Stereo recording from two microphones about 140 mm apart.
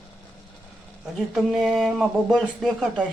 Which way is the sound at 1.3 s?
5° right (ahead or behind).